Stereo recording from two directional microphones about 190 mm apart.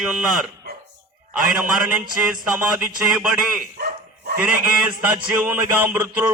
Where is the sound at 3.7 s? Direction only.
55° right (ahead or behind).